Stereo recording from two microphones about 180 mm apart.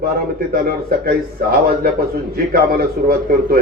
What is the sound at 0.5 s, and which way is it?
A man's voice, 55° right (ahead or behind).